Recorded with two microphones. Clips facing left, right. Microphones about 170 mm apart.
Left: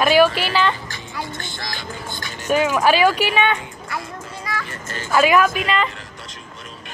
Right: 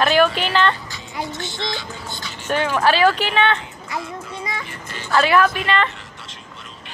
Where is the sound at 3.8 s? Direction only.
20° right (ahead or behind).